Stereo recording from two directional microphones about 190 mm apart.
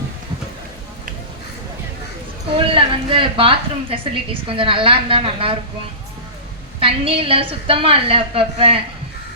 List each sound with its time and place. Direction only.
2.6 s a woman's voice: 30° right (ahead or behind)
6.7 s a woman's voice: 30° right (ahead or behind)